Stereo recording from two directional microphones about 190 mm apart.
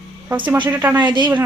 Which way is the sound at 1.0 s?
25° right (ahead or behind).